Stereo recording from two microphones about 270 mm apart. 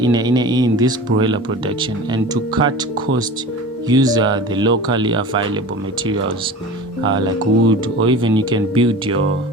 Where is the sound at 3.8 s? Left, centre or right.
Centre.